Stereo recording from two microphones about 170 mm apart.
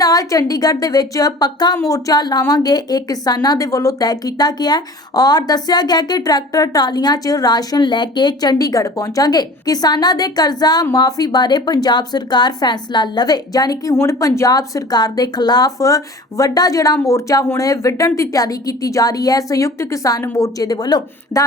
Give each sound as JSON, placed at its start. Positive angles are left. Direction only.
{"t": 0.0, "sound": "speech", "side_deg": 20}